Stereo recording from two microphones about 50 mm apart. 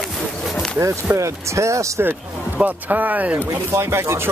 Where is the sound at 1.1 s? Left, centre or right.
Right.